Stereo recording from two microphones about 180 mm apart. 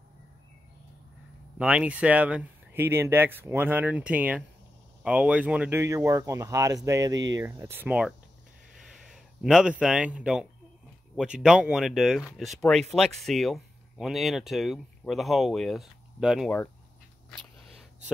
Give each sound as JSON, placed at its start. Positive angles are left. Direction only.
{"t": 1.6, "sound": "a man's voice", "side_deg": -5}